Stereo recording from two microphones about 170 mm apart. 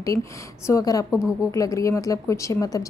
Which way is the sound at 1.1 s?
5° right (ahead or behind).